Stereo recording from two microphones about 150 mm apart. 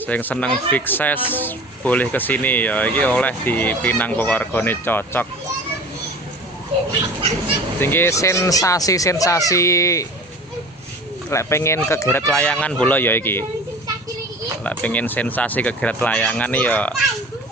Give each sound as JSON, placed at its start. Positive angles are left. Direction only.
{"t": 0.0, "sound": "speech", "side_deg": 10}
{"t": 7.8, "sound": "speech", "side_deg": 15}
{"t": 11.3, "sound": "speech", "side_deg": 20}
{"t": 12.2, "sound": "speech", "side_deg": 5}
{"t": 14.6, "sound": "speech", "side_deg": 10}